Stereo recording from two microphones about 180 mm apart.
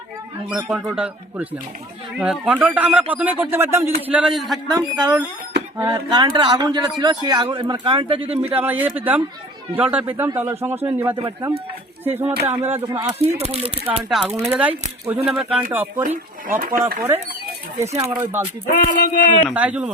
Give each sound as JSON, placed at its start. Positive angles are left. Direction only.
{"t": 0.5, "sound": "a man's voice", "side_deg": -5}
{"t": 4.7, "sound": "a man's voice", "side_deg": -20}
{"t": 8.4, "sound": "a man's voice", "side_deg": -10}
{"t": 11.2, "sound": "a man's voice", "side_deg": -25}
{"t": 12.0, "sound": "a man's voice", "side_deg": -10}
{"t": 13.4, "sound": "speech", "side_deg": -35}
{"t": 13.8, "sound": "speech", "side_deg": 0}
{"t": 14.5, "sound": "a man's voice", "side_deg": -10}
{"t": 16.0, "sound": "speech", "side_deg": -50}
{"t": 17.9, "sound": "a man's voice", "side_deg": -15}
{"t": 18.9, "sound": "speech", "side_deg": 45}
{"t": 19.5, "sound": "a man's voice", "side_deg": -5}